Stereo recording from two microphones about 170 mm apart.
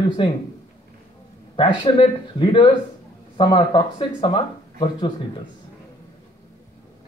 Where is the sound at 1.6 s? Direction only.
30° left (ahead or behind).